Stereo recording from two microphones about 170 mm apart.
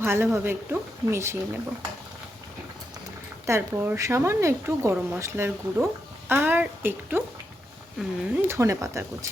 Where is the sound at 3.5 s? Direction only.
15° right (ahead or behind).